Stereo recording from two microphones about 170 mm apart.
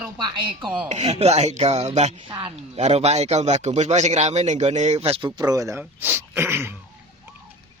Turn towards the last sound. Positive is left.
turn(degrees=-15)  # may be behind; listen again after turning